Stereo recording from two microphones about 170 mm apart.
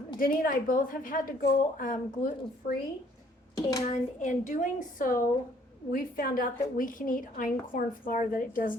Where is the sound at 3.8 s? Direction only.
45° left (ahead or behind).